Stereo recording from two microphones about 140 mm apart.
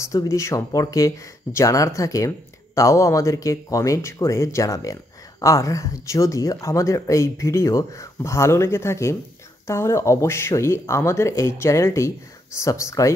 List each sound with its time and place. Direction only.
0.0 s speech: 20° left (ahead or behind)